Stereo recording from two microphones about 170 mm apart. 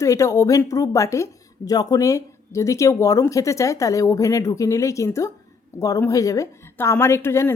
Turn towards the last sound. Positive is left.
turn(degrees=15)  # may be behind; listen again after turning